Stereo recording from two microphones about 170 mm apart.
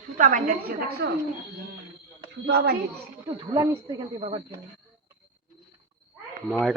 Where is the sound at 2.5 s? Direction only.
70° right (ahead or behind).